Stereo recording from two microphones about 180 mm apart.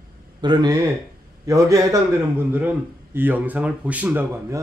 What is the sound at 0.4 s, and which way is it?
A man's voice, 25° right (ahead or behind).